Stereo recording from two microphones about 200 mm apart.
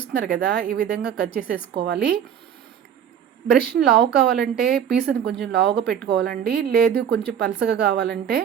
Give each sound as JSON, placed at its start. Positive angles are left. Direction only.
{"t": 0.0, "sound": "speech", "side_deg": -55}
{"t": 3.6, "sound": "speech", "side_deg": -55}